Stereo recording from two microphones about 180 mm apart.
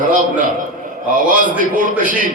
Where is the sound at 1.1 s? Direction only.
50° right (ahead or behind).